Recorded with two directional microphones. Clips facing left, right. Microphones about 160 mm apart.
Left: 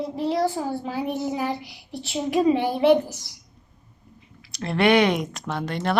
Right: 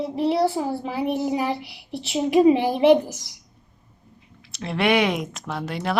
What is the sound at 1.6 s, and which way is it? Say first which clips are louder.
Speech: right 3 dB; 70° right (ahead or behind).